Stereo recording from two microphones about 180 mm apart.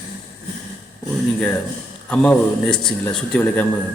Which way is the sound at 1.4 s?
10° left (ahead or behind).